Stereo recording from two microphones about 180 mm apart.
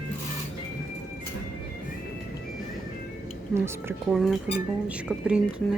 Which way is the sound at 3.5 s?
15° right (ahead or behind).